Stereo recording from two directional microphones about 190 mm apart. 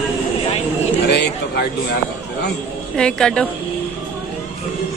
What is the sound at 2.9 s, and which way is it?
Speech, 5° left (ahead or behind).